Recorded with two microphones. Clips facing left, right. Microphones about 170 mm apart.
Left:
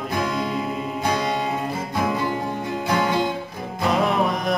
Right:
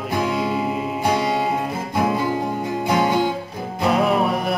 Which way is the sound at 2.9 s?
20° right (ahead or behind).